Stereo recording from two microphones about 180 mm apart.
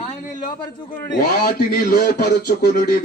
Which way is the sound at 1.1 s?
55° left (ahead or behind).